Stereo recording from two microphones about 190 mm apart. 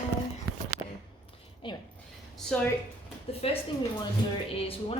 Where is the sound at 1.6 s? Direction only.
25° left (ahead or behind).